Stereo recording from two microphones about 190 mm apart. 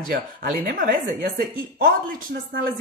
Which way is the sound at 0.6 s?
55° right (ahead or behind).